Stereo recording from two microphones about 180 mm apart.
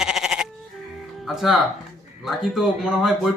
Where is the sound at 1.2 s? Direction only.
Centre (ahead or behind).